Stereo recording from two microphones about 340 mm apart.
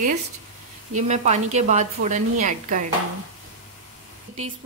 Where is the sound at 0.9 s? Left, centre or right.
Centre.